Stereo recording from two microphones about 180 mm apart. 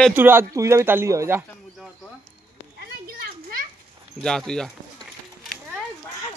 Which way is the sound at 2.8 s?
55° right (ahead or behind).